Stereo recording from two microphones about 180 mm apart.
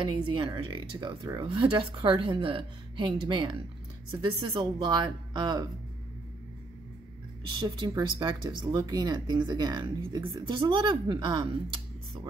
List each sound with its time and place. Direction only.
0.0 s speech: 25° right (ahead or behind)
7.4 s speech: 25° right (ahead or behind)